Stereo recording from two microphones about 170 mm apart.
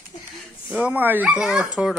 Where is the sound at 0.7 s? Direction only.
10° right (ahead or behind).